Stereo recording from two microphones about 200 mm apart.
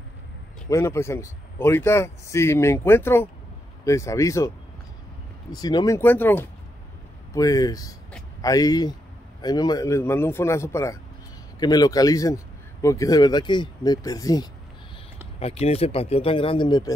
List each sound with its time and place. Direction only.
0.7 s a man's voice: 15° left (ahead or behind)
5.5 s a man's voice: 20° left (ahead or behind)
15.3 s speech: 30° left (ahead or behind)